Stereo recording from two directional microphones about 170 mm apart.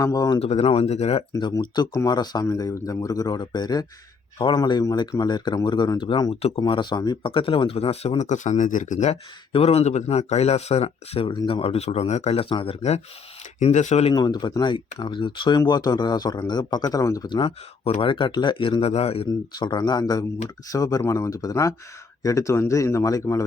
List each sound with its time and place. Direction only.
0.0 s speech: 20° left (ahead or behind)
0.3 s speech: 35° left (ahead or behind)
1.4 s speech: 25° left (ahead or behind); by 9.1 s 45° left (ahead or behind)
9.5 s speech: 35° left (ahead or behind)
14.1 s speech: 25° left (ahead or behind)